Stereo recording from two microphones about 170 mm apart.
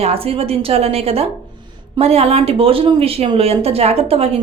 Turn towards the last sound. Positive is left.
turn(degrees=-35)  # may be behind; listen again after turning